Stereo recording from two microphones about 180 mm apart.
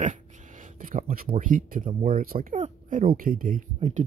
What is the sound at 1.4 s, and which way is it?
Speech, 50° right (ahead or behind).